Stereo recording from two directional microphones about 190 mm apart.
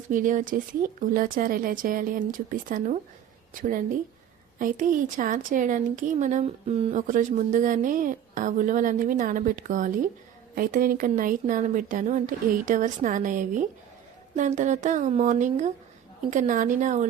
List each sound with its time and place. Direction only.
0.1 s speech: 45° right (ahead or behind)